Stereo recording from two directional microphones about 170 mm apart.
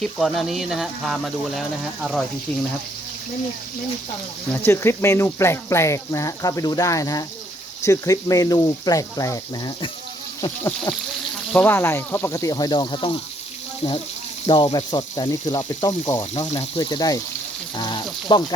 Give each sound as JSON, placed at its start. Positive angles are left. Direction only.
{"t": 0.0, "sound": "speech", "side_deg": 0}
{"t": 4.4, "sound": "speech", "side_deg": 15}
{"t": 11.5, "sound": "speech", "side_deg": 10}
{"t": 14.4, "sound": "speech", "side_deg": 25}
{"t": 16.5, "sound": "speech", "side_deg": 35}
{"t": 16.9, "sound": "speech", "side_deg": 20}
{"t": 17.7, "sound": "frying", "side_deg": 25}